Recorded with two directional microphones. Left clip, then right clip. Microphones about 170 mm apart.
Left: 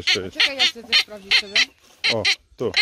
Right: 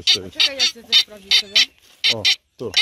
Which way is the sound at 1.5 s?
30° left (ahead or behind).